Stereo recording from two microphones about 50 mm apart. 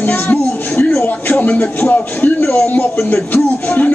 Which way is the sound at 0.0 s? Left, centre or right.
Left.